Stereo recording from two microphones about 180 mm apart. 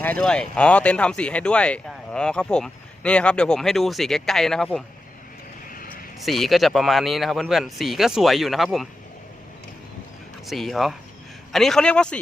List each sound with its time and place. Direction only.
0.0 s speech: 5° left (ahead or behind)
5.6 s vehicle: 50° left (ahead or behind)
6.1 s speech: centre (ahead or behind)
10.4 s speech: centre (ahead or behind)